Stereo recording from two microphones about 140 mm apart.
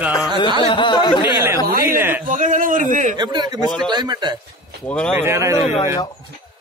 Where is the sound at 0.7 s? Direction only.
35° left (ahead or behind).